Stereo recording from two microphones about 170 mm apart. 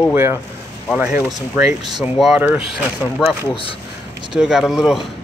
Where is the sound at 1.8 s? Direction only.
25° right (ahead or behind).